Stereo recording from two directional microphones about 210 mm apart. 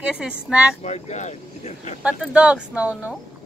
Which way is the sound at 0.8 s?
30° left (ahead or behind).